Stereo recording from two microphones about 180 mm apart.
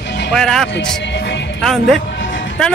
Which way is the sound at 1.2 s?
80° left.